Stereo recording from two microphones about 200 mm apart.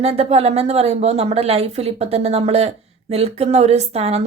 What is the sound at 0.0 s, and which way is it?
A woman's voice, 30° right (ahead or behind).